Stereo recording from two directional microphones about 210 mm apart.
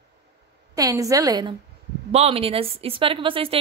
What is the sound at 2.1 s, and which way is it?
A woman's voice, 30° right (ahead or behind).